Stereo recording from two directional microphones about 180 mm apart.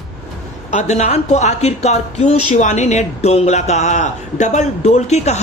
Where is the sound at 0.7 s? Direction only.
40° left (ahead or behind).